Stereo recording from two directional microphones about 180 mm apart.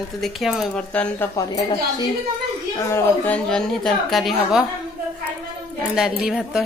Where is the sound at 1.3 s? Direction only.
20° left (ahead or behind); by 4.6 s centre (ahead or behind).